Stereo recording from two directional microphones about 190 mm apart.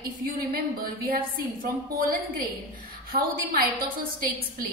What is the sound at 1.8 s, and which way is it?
A woman's voice, 50° right (ahead or behind).